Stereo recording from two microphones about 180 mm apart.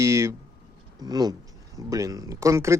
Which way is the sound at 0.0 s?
15° right (ahead or behind).